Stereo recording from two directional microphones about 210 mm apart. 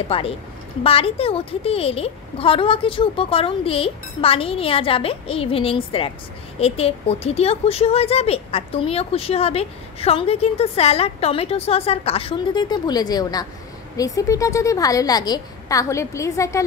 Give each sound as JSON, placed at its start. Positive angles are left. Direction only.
{"t": 0.1, "sound": "a woman's voice", "side_deg": 25}